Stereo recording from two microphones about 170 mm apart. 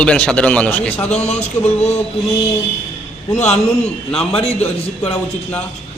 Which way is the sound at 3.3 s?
40° left (ahead or behind).